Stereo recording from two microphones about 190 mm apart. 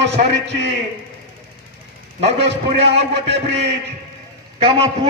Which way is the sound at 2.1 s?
30° right (ahead or behind).